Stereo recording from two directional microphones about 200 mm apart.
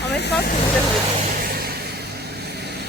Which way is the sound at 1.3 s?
45° right (ahead or behind).